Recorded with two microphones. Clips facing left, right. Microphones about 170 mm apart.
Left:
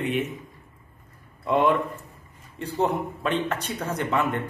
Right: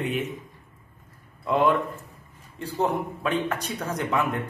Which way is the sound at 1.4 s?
Centre (ahead or behind).